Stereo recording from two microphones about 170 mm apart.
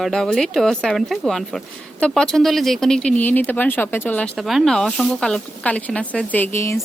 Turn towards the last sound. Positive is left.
turn(degrees=15)  # may be behind; listen again after turning